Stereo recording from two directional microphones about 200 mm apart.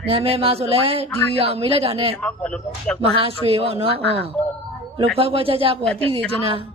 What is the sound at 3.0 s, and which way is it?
Speech, 30° right (ahead or behind).